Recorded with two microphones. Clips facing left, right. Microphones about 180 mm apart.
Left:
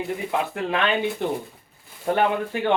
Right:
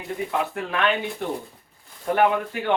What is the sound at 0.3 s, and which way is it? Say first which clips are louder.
Speech: left 3 dB; 25° left (ahead or behind).